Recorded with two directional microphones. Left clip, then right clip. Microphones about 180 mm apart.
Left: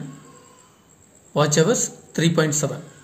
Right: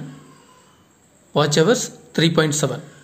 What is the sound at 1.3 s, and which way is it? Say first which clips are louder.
A man's voice: right 2 dB; 25° right (ahead or behind).